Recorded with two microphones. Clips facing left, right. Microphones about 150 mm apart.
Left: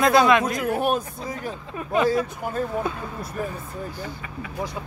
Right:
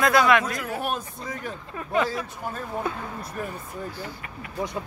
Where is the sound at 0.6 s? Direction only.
50° left (ahead or behind).